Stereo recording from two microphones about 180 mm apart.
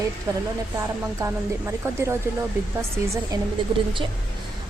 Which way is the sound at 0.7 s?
15° right (ahead or behind).